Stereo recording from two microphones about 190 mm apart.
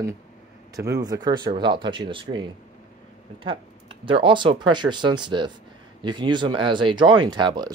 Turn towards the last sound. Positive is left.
turn(degrees=-25)  # may be behind; listen again after turning